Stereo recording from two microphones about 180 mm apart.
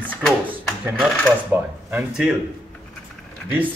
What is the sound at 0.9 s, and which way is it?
Coin, centre (ahead or behind).